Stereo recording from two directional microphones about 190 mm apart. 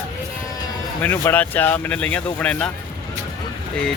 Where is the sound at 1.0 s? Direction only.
10° left (ahead or behind).